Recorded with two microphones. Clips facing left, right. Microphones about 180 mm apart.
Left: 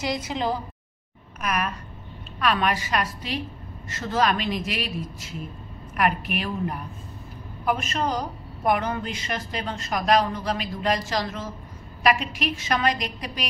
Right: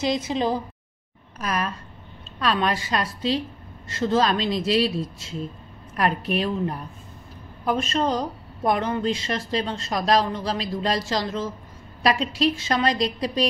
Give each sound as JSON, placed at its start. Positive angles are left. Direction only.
{"t": 0.0, "sound": "speech", "side_deg": -20}
{"t": 1.4, "sound": "a woman's voice", "side_deg": -30}